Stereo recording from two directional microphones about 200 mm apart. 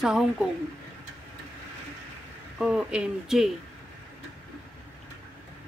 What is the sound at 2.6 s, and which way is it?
Speech, 5° right (ahead or behind).